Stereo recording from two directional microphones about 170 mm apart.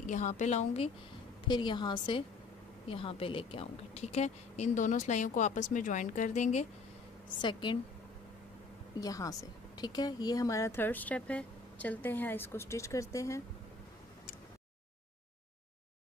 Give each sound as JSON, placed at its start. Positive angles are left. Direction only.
{"t": 0.0, "sound": "a woman's voice", "side_deg": 45}
{"t": 1.5, "sound": "a woman's voice", "side_deg": 25}
{"t": 7.4, "sound": "a woman's voice", "side_deg": 30}
{"t": 9.0, "sound": "speech", "side_deg": 20}